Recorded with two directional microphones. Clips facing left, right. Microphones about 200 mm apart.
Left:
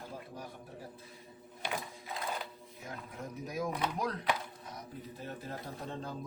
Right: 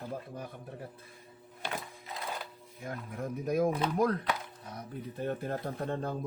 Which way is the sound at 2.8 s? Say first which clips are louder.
Right 5 dB; 55° right (ahead or behind).